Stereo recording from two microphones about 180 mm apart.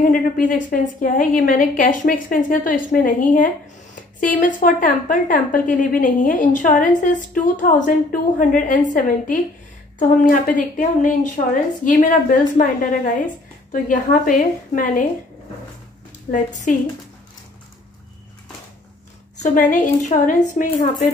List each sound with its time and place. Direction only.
0.0 s speech: 45° left (ahead or behind)
16.7 s speech: 45° left (ahead or behind)
19.4 s speech: 45° left (ahead or behind)